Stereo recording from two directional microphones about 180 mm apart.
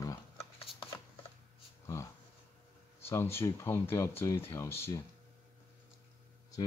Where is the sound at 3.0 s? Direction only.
15° left (ahead or behind).